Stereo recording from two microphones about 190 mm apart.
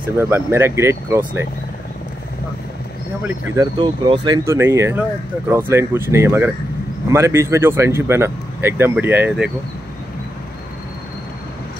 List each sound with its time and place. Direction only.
0.0 s speech: 10° right (ahead or behind)
3.5 s speech: 20° right (ahead or behind)